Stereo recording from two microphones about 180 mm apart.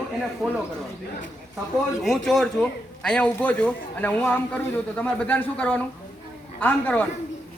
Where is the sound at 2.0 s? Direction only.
Centre (ahead or behind).